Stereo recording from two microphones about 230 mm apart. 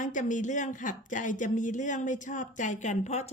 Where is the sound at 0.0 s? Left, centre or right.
Left.